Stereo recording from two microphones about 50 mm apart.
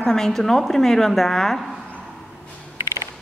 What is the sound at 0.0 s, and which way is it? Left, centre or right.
A woman's voice, centre.